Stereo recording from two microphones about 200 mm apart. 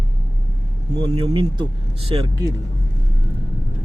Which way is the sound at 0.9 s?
25° right (ahead or behind).